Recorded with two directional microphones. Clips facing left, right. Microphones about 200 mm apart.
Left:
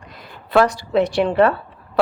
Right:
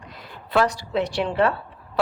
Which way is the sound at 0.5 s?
55° left (ahead or behind).